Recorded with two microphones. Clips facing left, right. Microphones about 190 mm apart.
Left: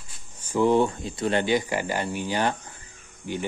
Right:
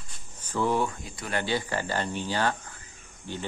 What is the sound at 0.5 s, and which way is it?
Speech, 20° left (ahead or behind).